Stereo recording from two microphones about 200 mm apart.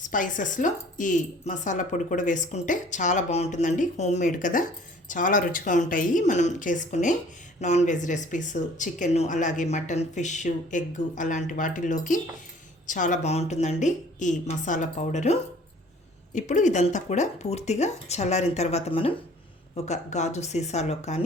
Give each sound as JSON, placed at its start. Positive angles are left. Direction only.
{"t": 0.0, "sound": "speech", "side_deg": 40}